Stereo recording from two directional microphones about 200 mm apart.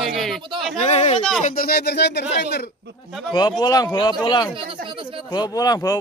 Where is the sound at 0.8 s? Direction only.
35° left (ahead or behind).